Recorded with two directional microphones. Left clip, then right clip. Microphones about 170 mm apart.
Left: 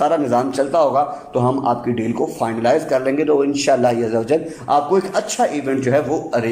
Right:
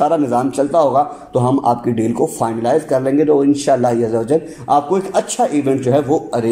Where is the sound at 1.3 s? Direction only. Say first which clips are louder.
Right 4 dB; 25° right (ahead or behind).